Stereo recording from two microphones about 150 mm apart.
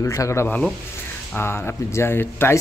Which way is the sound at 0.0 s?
20° left (ahead or behind).